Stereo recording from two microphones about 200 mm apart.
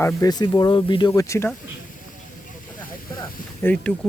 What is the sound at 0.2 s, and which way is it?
Speech, 20° left (ahead or behind).